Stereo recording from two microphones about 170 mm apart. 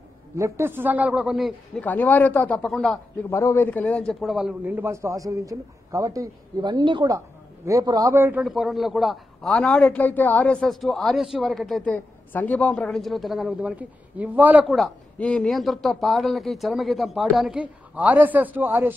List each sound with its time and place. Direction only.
0.4 s a man's voice: 15° right (ahead or behind)
1.9 s speech: 10° left (ahead or behind)
3.3 s a man's voice: 15° left (ahead or behind); by 8.4 s 15° right (ahead or behind)
8.4 s a man's voice: centre (ahead or behind)
14.8 s a man's voice: 5° left (ahead or behind); by 18.9 s 10° right (ahead or behind)